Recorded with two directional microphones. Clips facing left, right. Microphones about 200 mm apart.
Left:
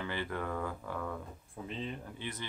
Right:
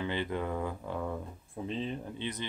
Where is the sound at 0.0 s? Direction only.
20° right (ahead or behind).